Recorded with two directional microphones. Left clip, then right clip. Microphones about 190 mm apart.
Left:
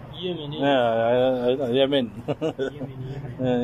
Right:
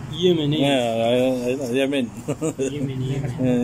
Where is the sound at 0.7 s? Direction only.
20° right (ahead or behind).